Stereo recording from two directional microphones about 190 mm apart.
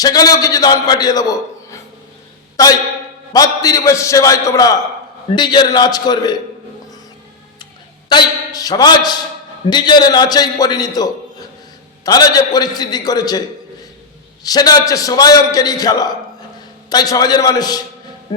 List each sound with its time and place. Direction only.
0.0 s a man's voice: 20° left (ahead or behind)
8.1 s a man's voice: 20° left (ahead or behind)
14.4 s a man's voice: 20° left (ahead or behind)